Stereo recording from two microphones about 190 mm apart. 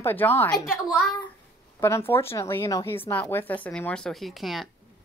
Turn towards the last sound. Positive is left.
turn(degrees=0)  # may be behind; listen again after turning